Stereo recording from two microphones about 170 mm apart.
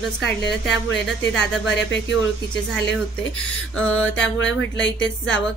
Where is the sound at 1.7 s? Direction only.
90° left.